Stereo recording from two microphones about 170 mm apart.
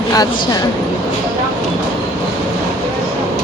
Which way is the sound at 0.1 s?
20° left (ahead or behind).